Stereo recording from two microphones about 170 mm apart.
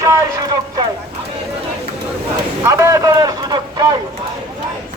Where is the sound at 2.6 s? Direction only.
15° right (ahead or behind).